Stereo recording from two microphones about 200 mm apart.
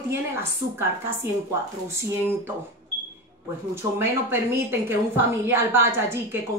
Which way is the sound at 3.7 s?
10° right (ahead or behind).